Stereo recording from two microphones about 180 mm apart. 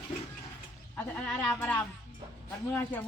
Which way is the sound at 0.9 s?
10° left (ahead or behind).